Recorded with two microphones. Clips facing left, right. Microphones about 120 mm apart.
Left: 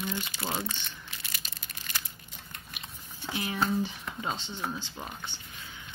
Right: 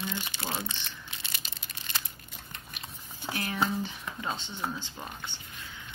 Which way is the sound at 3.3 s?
15° left (ahead or behind).